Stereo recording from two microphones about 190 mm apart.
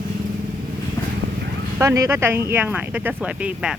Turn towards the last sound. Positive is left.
turn(degrees=-5)  # may be behind; listen again after turning